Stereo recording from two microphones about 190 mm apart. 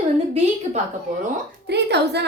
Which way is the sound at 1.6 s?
60° right (ahead or behind).